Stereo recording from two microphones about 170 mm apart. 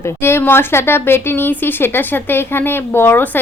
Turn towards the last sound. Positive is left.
turn(degrees=10)  # may be behind; listen again after turning